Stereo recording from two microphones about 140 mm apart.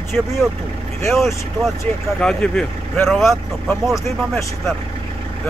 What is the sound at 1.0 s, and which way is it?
Speech, centre (ahead or behind).